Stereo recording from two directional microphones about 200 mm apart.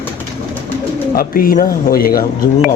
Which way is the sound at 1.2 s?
45° left (ahead or behind).